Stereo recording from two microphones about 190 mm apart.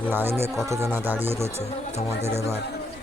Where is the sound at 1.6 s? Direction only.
35° left (ahead or behind).